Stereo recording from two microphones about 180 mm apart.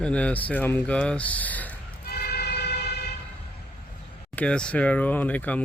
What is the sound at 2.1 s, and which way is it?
Vehicle, 60° left (ahead or behind).